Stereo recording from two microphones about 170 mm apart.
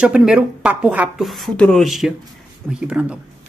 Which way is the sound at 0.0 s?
5° right (ahead or behind).